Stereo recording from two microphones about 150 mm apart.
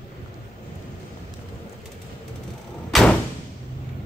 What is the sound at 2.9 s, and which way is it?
Thump, 5° left (ahead or behind).